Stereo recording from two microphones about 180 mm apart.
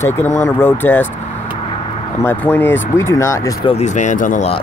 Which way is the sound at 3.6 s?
40° left (ahead or behind).